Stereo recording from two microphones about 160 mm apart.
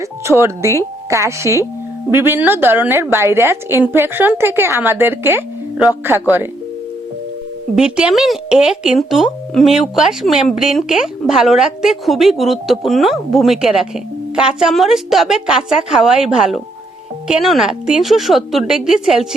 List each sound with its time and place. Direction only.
0.0 s a woman's voice: 20° right (ahead or behind)
7.8 s speech: 5° right (ahead or behind)